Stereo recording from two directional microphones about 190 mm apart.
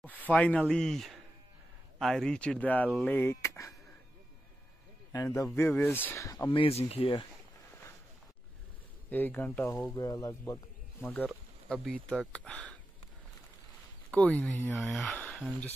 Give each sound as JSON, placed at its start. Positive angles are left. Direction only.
{"t": 0.0, "sound": "speech", "side_deg": 10}
{"t": 5.1, "sound": "speech", "side_deg": 15}
{"t": 9.1, "sound": "speech", "side_deg": 10}
{"t": 14.1, "sound": "speech", "side_deg": 5}